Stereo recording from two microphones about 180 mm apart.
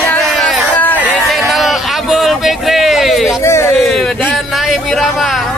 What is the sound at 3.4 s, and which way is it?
Speech, 15° left (ahead or behind).